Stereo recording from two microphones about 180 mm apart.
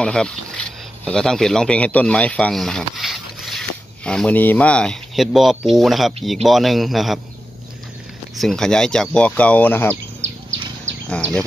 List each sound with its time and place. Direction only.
0.0 s speech: 5° left (ahead or behind)
8.4 s speech: 5° left (ahead or behind)
10.2 s insect: 90° right
11.1 s speech: 5° left (ahead or behind)